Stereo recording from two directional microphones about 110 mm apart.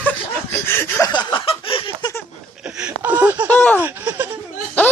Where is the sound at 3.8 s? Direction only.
15° right (ahead or behind).